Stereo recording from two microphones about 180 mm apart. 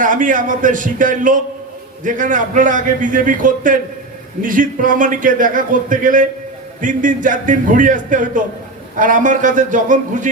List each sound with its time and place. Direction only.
0.0 s a man's voice: 45° right (ahead or behind)